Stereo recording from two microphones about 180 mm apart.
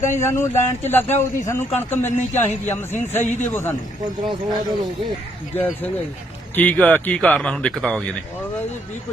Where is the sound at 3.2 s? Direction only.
40° left (ahead or behind).